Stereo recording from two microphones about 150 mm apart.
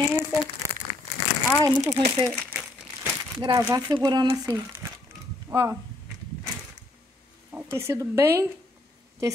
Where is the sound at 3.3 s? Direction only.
25° right (ahead or behind).